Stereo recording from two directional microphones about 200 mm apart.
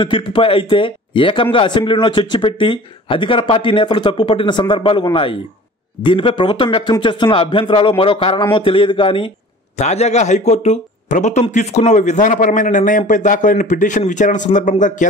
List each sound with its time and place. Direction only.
0.0 s a man's voice: 25° left (ahead or behind)